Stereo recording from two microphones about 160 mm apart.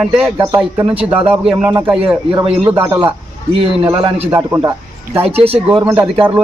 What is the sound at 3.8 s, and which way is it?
Speech, 30° right (ahead or behind).